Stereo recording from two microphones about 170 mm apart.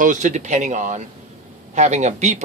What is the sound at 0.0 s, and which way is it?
Speech, 45° right (ahead or behind).